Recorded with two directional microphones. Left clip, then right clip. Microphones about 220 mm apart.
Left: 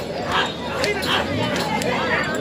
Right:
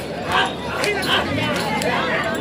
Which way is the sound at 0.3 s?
Centre (ahead or behind).